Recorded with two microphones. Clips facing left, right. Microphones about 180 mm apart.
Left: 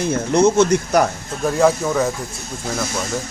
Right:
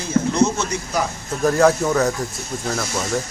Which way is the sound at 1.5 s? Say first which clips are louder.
Right 1 dB; centre (ahead or behind).